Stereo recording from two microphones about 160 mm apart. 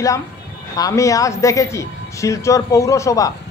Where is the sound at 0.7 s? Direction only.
20° left (ahead or behind).